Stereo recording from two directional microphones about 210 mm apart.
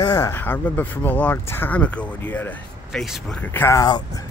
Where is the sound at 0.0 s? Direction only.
15° left (ahead or behind).